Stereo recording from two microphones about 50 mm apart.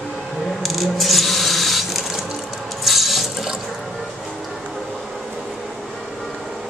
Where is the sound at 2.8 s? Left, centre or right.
Centre.